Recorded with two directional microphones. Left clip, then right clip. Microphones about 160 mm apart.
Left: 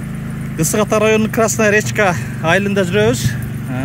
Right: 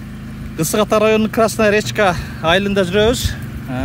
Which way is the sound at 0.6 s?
Centre (ahead or behind).